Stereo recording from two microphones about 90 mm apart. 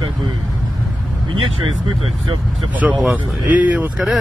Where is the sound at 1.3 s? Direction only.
65° right (ahead or behind).